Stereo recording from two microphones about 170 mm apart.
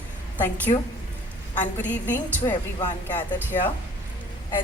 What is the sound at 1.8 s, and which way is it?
A woman's voice, 10° left (ahead or behind).